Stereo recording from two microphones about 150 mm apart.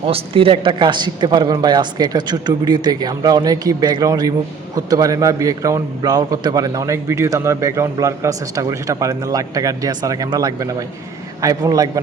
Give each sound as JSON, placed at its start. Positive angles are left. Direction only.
{"t": 0.0, "sound": "a man's voice", "side_deg": -35}